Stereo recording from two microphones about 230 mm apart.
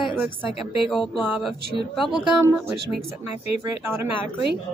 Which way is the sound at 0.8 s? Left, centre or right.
Centre.